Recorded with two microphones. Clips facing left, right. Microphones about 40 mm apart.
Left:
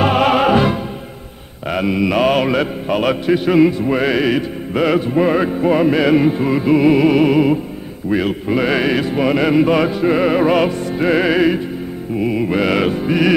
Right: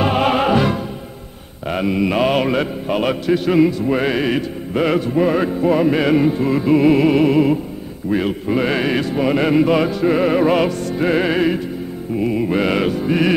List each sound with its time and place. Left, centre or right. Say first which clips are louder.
0.0 s music: left 3 dB; centre
1.7 s mantra: left 1 dB; centre
2.3 s music: left 2 dB; centre